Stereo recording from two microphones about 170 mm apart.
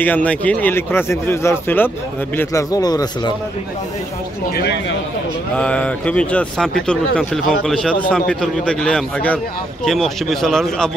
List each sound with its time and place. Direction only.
0.0 s a man's voice: 10° left (ahead or behind)
4.6 s speech: 85° left
5.6 s speech: 5° left (ahead or behind)